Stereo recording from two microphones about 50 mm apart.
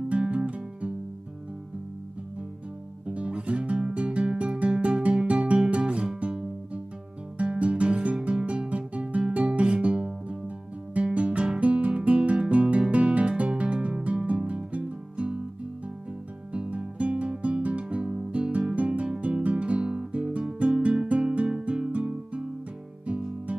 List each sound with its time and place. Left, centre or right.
0.1 s music: right
3.1 s music: right
5.6 s guitar: right
6.1 s music: right
7.3 s guitar: right
9.3 s music: right
11.0 s guitar: right
14.2 s music: right
16.5 s guitar: right
20.5 s music: right